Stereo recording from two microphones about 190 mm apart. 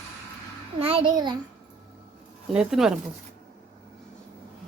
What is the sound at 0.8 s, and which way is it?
Speech, 30° right (ahead or behind).